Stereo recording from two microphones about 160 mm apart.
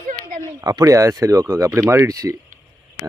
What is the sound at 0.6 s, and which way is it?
Speech, 25° right (ahead or behind).